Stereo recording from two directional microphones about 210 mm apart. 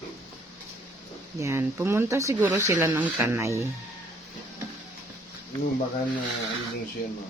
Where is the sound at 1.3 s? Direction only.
15° right (ahead or behind).